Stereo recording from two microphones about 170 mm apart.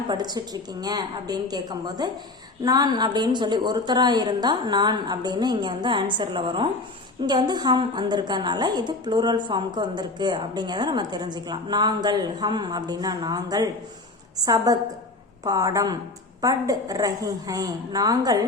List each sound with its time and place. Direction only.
0.1 s a woman's voice: 25° right (ahead or behind)